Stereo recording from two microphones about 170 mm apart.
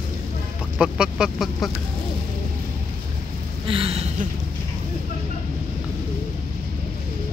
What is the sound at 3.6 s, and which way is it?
Speech, 35° right (ahead or behind).